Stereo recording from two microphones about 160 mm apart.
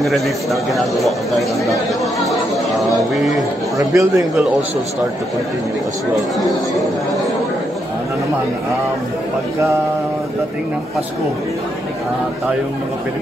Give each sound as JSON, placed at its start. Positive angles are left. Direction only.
{"t": 0.0, "sound": "a man's voice", "side_deg": 0}
{"t": 2.2, "sound": "speech", "side_deg": 0}
{"t": 3.9, "sound": "a man's voice", "side_deg": -20}